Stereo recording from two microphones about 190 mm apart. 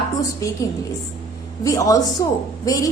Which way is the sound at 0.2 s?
15° left (ahead or behind).